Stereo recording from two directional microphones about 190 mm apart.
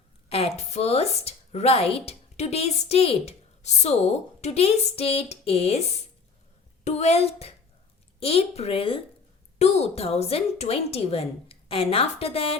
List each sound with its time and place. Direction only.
0.3 s a woman's voice: 30° left (ahead or behind)
6.8 s a woman's voice: 35° left (ahead or behind)